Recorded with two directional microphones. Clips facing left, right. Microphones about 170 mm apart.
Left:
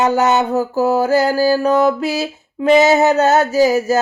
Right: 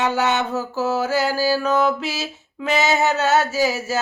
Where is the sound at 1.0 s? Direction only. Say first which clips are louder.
Left 6 dB; 40° left (ahead or behind).